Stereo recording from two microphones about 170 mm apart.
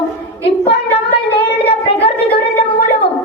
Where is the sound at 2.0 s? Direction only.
35° left (ahead or behind).